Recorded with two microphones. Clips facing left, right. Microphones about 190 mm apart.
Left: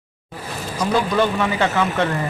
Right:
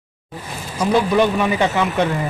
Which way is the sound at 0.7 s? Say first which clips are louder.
Right 3 dB; 15° right (ahead or behind).